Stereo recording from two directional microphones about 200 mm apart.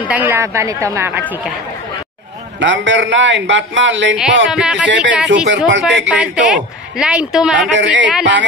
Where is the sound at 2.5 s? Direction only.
65° right (ahead or behind).